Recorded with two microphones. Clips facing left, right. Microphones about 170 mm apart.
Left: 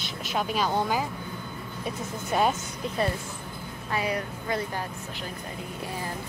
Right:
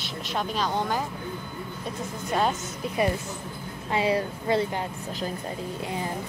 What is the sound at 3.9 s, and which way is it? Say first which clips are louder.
Speech: right 5 dB; 25° right (ahead or behind).